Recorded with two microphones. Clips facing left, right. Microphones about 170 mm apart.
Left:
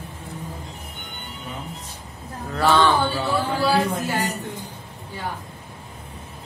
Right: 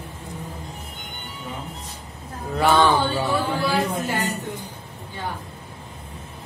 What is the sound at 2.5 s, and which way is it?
Speech, 10° right (ahead or behind).